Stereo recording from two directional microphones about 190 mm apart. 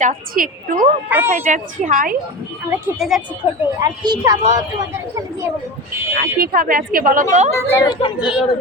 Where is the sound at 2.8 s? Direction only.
5° right (ahead or behind).